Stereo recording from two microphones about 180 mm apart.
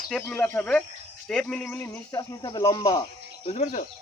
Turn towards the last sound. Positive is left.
turn(degrees=35)  # may be behind; listen again after turning